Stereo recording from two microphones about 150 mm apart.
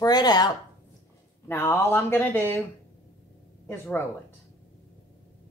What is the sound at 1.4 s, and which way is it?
Speech, 15° left (ahead or behind).